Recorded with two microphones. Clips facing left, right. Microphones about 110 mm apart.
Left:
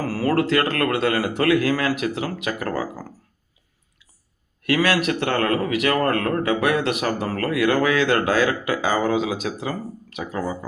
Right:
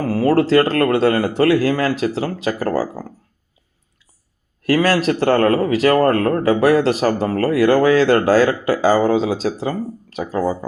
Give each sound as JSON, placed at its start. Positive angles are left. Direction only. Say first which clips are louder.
{"t": 0.0, "sound": "speech", "louder": "right 5 dB", "side_deg": -25}
{"t": 4.6, "sound": "speech", "louder": "right 4 dB", "side_deg": -35}